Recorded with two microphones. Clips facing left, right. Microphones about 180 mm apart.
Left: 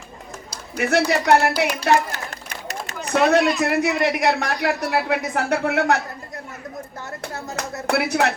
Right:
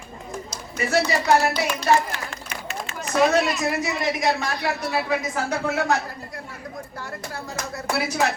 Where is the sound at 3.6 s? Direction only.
65° left (ahead or behind).